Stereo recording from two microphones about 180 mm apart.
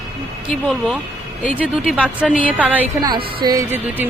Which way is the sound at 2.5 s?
10° right (ahead or behind).